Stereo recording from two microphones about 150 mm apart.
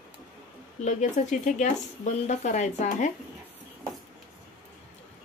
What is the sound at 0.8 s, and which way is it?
Speech, 50° left (ahead or behind).